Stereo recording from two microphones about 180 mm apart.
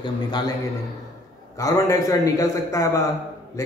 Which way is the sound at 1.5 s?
20° left (ahead or behind).